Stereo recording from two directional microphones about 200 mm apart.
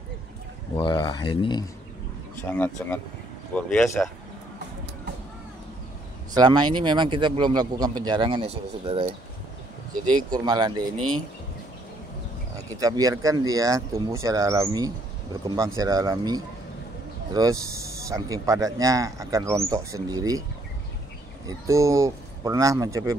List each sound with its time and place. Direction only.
0.7 s speech: 20° left (ahead or behind)
2.4 s speech: 10° left (ahead or behind)
6.3 s speech: 20° right (ahead or behind)
10.0 s speech: 20° right (ahead or behind)
12.7 s a man's voice: 15° right (ahead or behind)
21.5 s a man's voice: 15° right (ahead or behind)